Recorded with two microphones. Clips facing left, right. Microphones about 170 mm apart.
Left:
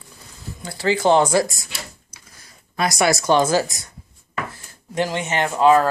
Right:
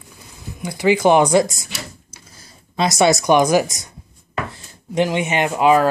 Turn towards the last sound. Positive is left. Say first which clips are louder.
# right 1 dB
turn(degrees=-15)  # may be behind; listen again after turning